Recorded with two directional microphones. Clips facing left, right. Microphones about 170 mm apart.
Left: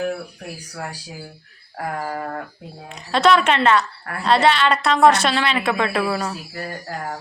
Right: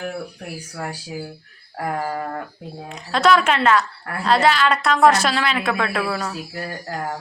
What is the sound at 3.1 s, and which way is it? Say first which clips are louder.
Speech: left 1 dB; centre (ahead or behind).